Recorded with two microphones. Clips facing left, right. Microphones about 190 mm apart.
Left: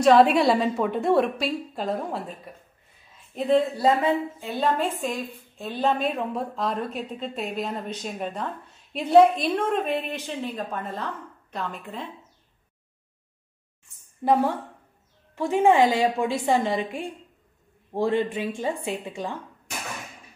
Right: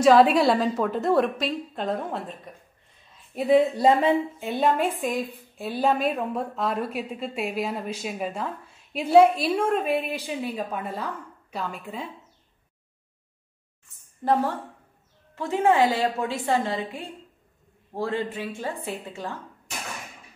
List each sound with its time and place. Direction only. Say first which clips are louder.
0.0 s a woman's voice: even; centre (ahead or behind)
3.8 s a woman's voice: right 2 dB; 20° right (ahead or behind); by 12.1 s 5° right (ahead or behind)
14.2 s a woman's voice: left 2 dB; 10° left (ahead or behind)